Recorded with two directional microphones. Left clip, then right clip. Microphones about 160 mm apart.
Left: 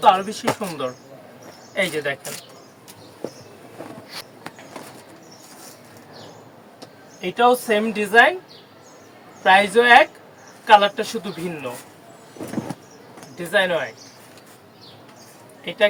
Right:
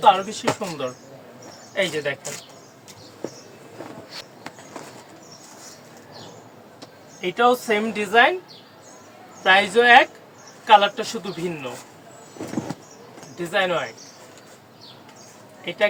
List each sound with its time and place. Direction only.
0.0 s speech: 15° left (ahead or behind)
4.1 s a sound: 20° left (ahead or behind)
7.2 s speech: 10° left (ahead or behind)
9.4 s speech: 10° left (ahead or behind)
13.4 s speech: 10° left (ahead or behind)